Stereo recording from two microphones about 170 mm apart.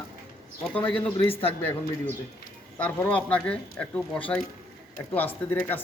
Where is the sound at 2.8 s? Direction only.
10° left (ahead or behind).